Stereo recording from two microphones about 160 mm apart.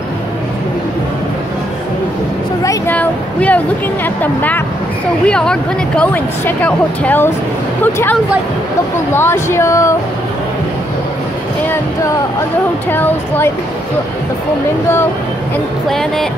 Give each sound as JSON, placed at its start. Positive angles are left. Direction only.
{"t": 2.6, "sound": "a sound", "side_deg": 20}
{"t": 3.0, "sound": "speech", "side_deg": 10}
{"t": 12.9, "sound": "speech", "side_deg": 10}
{"t": 15.9, "sound": "speech", "side_deg": 0}